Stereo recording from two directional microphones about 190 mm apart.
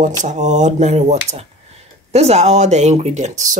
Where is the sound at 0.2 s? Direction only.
40° right (ahead or behind).